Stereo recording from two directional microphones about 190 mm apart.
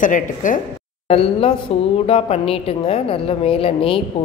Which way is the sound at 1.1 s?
30° left (ahead or behind).